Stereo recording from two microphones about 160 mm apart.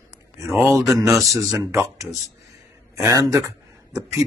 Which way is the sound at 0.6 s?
20° right (ahead or behind).